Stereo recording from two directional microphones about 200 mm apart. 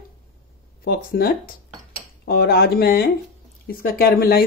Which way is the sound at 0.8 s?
50° left (ahead or behind).